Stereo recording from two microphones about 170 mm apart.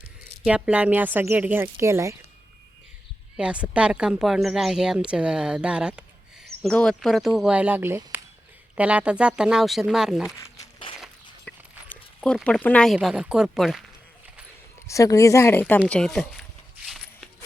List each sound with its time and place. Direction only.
0.4 s speech: 5° right (ahead or behind)
3.3 s speech: 5° right (ahead or behind)
10.6 s walk: 30° left (ahead or behind)
11.0 s a sound: 5° left (ahead or behind)
12.5 s speech: 5° left (ahead or behind)
14.8 s speech: 20° left (ahead or behind)
15.9 s zipper: 5° left (ahead or behind)